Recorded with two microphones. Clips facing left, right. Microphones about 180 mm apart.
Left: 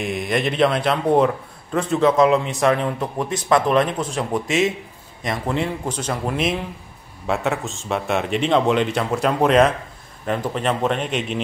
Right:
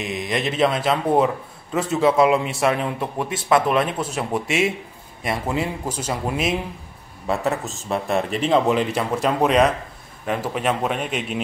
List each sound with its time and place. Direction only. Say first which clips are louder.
0.1 s a man's voice: left 2 dB; centre (ahead or behind)